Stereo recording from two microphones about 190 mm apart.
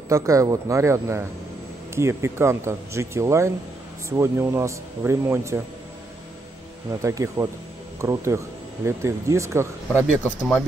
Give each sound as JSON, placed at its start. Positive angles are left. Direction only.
{"t": 0.1, "sound": "a man's voice", "side_deg": -15}
{"t": 7.0, "sound": "a man's voice", "side_deg": -15}